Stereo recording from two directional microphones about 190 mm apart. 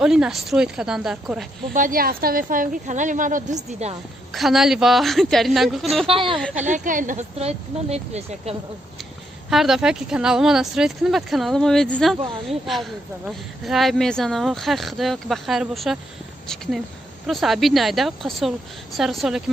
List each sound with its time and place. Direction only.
0.0 s speech: 5° right (ahead or behind)
1.7 s speech: 45° right (ahead or behind)
4.3 s speech: centre (ahead or behind)
6.0 s speech: 25° right (ahead or behind)
6.7 s speech: 45° right (ahead or behind)
9.5 s speech: centre (ahead or behind)
17.3 s speech: centre (ahead or behind)